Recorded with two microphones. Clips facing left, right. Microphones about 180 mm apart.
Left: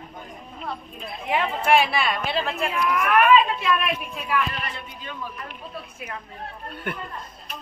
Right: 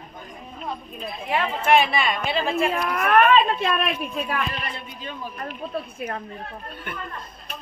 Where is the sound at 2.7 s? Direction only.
40° right (ahead or behind).